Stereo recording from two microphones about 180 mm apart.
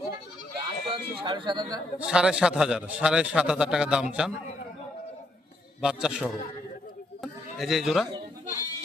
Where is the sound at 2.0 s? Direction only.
5° right (ahead or behind).